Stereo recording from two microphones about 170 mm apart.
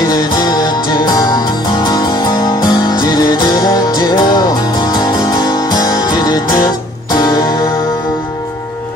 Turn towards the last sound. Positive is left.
turn(degrees=20)  # may be behind; listen again after turning